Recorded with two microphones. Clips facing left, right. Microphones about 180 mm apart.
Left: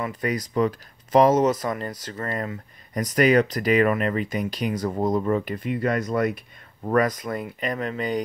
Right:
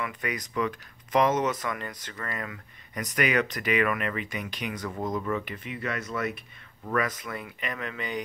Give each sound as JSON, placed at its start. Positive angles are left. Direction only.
{"t": 0.0, "sound": "speech", "side_deg": 30}